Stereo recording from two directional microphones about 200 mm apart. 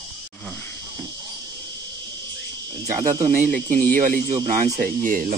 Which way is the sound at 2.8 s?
15° right (ahead or behind).